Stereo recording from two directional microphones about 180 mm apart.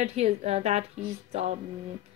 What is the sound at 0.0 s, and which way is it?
Speech, 35° right (ahead or behind).